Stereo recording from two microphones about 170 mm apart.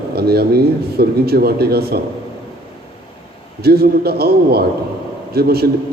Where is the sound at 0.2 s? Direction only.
70° right (ahead or behind).